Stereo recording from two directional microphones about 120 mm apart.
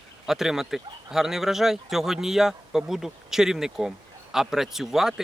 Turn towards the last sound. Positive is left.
turn(degrees=-5)  # may be behind; listen again after turning